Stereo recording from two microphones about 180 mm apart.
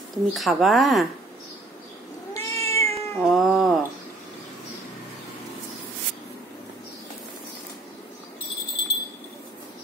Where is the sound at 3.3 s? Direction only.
Centre (ahead or behind).